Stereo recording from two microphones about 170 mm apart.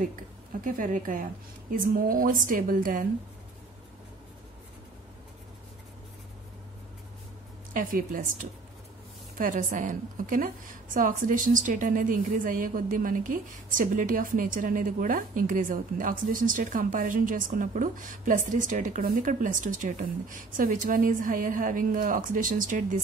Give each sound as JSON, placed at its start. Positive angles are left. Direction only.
{"t": 0.6, "sound": "a woman's voice", "side_deg": -55}
{"t": 7.7, "sound": "a woman's voice", "side_deg": -55}